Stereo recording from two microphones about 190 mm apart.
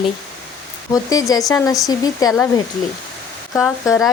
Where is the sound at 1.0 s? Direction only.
20° left (ahead or behind).